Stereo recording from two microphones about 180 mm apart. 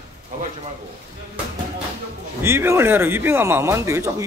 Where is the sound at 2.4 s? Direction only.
15° right (ahead or behind).